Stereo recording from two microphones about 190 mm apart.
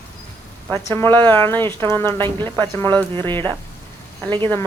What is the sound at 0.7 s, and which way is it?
Speech, 10° left (ahead or behind).